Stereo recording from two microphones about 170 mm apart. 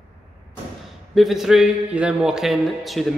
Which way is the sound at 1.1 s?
Centre (ahead or behind).